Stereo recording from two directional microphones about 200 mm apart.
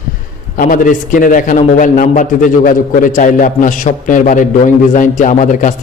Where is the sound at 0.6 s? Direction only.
40° left (ahead or behind).